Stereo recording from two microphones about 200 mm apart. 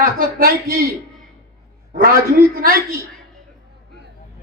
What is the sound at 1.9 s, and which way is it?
Speech, 45° right (ahead or behind).